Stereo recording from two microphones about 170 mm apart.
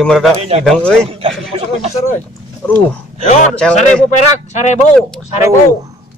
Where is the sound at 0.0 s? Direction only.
5° left (ahead or behind).